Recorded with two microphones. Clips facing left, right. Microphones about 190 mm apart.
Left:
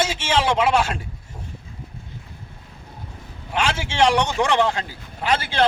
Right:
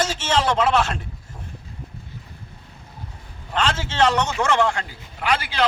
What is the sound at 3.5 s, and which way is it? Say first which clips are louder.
A man's voice: even; 10° left (ahead or behind).